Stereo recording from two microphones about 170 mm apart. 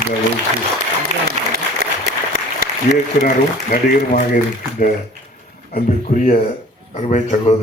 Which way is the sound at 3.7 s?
55° left (ahead or behind).